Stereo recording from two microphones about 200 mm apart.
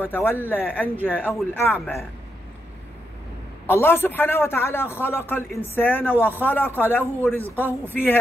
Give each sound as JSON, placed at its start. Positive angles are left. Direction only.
{"t": 0.0, "sound": "a man's voice", "side_deg": 10}
{"t": 3.6, "sound": "a man's voice", "side_deg": 10}